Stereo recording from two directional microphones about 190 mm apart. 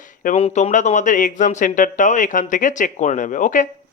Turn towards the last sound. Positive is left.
turn(degrees=40)  # may be behind; listen again after turning